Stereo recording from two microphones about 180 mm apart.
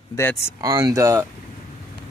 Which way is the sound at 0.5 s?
15° right (ahead or behind).